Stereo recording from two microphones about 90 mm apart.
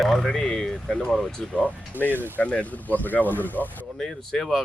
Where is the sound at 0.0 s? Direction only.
5° left (ahead or behind).